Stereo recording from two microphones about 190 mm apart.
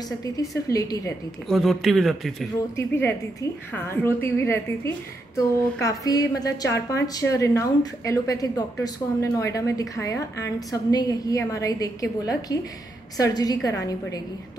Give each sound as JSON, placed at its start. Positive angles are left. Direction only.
{"t": 0.2, "sound": "a woman's voice", "side_deg": 15}
{"t": 1.5, "sound": "speech", "side_deg": 0}
{"t": 2.7, "sound": "a woman's voice", "side_deg": 10}